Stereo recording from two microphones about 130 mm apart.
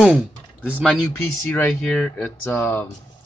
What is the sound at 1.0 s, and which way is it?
Speech, 10° left (ahead or behind).